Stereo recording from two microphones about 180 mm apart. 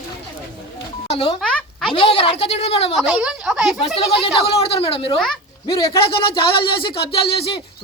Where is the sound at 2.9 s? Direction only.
Centre (ahead or behind).